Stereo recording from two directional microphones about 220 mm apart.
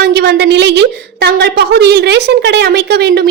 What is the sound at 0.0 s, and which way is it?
A woman's voice, 45° right (ahead or behind).